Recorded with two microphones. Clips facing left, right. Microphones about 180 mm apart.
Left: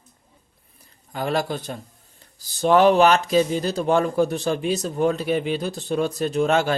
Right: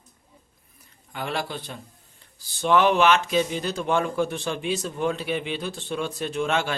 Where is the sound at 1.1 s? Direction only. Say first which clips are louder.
Left 6 dB; 40° left (ahead or behind).